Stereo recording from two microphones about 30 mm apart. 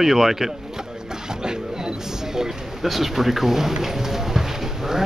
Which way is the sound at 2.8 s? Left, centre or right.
Centre.